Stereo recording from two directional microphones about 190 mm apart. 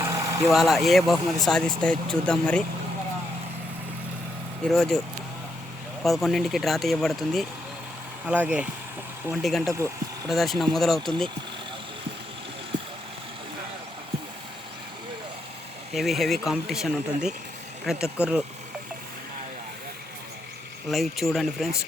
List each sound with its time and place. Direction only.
0.0 s vehicle: 15° right (ahead or behind)
0.4 s speech: centre (ahead or behind)
4.6 s speech: centre (ahead or behind)
15.9 s speech: centre (ahead or behind)
20.9 s speech: centre (ahead or behind)